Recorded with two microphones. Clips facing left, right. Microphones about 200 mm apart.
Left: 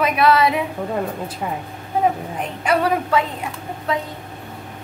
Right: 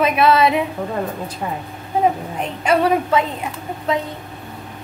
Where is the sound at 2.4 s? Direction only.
20° right (ahead or behind).